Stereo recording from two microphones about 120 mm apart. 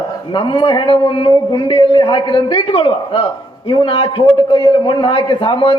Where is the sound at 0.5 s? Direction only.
40° left (ahead or behind).